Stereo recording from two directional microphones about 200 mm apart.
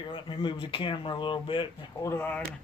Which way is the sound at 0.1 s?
25° left (ahead or behind).